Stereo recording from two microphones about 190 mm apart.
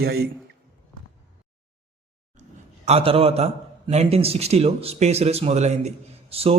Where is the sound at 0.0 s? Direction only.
55° right (ahead or behind).